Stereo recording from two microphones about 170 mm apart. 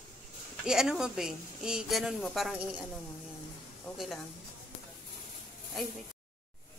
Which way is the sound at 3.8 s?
Centre (ahead or behind).